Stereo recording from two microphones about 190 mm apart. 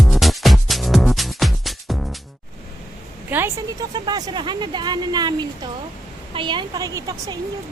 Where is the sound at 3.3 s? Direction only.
10° right (ahead or behind).